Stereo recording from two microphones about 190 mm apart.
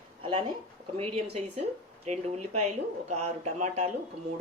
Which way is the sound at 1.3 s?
35° right (ahead or behind).